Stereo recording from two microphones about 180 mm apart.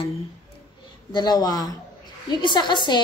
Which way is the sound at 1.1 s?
20° left (ahead or behind).